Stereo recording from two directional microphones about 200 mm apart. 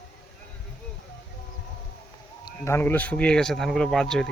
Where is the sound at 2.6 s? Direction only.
10° left (ahead or behind).